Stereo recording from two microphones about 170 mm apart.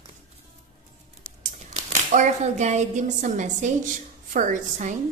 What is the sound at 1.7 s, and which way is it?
Speech, 45° right (ahead or behind).